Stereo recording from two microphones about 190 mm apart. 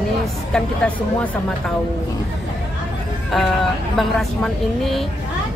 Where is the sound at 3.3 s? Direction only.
Centre (ahead or behind).